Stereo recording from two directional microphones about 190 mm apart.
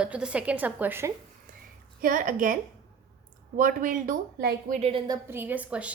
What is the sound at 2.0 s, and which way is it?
Speech, 45° right (ahead or behind).